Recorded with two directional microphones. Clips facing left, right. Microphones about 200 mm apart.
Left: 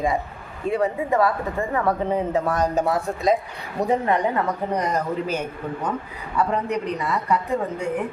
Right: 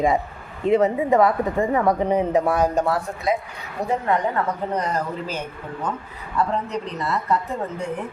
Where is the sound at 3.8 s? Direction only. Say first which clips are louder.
Left 1 dB; 15° left (ahead or behind).